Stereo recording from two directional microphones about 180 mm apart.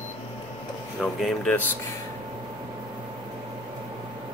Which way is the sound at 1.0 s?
5° left (ahead or behind).